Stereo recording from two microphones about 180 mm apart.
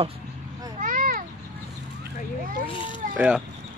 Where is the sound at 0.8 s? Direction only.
50° right (ahead or behind).